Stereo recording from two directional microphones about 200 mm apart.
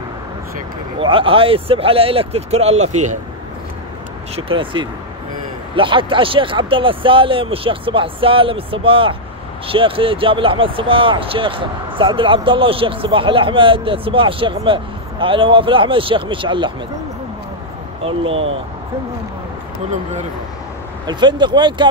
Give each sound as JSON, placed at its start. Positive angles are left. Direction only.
{"t": 0.9, "sound": "speech", "side_deg": -25}
{"t": 4.5, "sound": "speech", "side_deg": -25}
{"t": 18.0, "sound": "speech", "side_deg": -30}
{"t": 21.1, "sound": "speech", "side_deg": -20}